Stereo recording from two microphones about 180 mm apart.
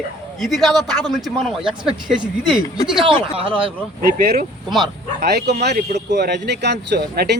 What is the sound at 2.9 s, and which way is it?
Speech, 30° right (ahead or behind).